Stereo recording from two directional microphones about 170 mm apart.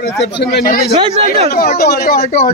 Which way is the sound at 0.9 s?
35° right (ahead or behind).